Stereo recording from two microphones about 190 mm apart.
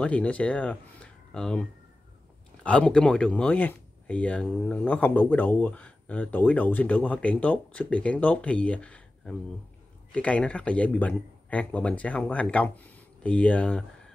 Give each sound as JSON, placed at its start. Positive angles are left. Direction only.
{"t": 0.0, "sound": "speech", "side_deg": 5}